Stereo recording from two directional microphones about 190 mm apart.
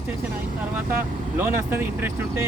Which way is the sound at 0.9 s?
10° right (ahead or behind).